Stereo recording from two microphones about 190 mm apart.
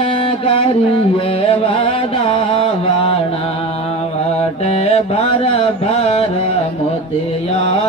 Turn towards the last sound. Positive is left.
turn(degrees=35)  # may be behind; listen again after turning